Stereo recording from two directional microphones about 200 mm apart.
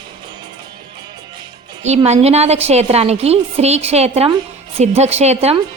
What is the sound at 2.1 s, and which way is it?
A woman's voice, 30° right (ahead or behind).